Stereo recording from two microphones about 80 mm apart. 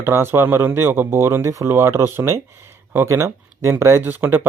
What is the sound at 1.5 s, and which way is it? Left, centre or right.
Speech, right.